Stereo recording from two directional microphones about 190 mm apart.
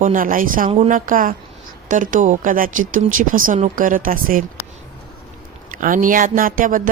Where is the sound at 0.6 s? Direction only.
30° right (ahead or behind).